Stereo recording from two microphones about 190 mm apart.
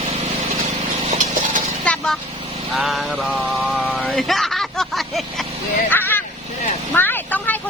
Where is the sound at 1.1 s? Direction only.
40° right (ahead or behind).